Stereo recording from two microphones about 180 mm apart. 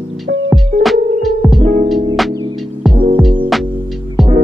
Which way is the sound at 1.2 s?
Centre (ahead or behind).